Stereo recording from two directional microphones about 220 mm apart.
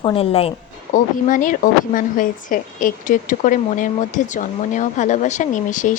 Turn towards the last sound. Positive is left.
turn(degrees=35)  # may be behind; listen again after turning